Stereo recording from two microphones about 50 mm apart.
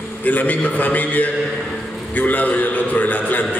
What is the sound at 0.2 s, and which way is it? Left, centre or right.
A man's voice, left.